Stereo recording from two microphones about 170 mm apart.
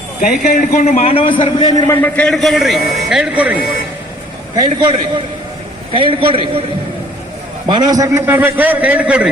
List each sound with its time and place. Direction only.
0.2 s a man's voice: 50° left (ahead or behind)
1.0 s a man's voice: 30° left (ahead or behind)
2.0 s a man's voice: 5° left (ahead or behind)
4.5 s a man's voice: 25° right (ahead or behind)
7.7 s a man's voice: 25° right (ahead or behind); by 9.3 s 5° right (ahead or behind)